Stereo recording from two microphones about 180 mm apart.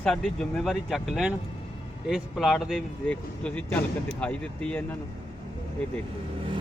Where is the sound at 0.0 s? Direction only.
5° left (ahead or behind).